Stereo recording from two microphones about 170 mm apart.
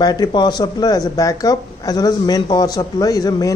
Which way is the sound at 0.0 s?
25° left (ahead or behind).